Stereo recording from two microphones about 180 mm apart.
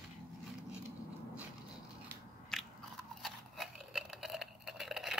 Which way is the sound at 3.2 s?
Centre (ahead or behind).